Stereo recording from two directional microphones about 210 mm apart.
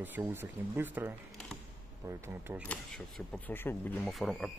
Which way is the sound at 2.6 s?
5° left (ahead or behind).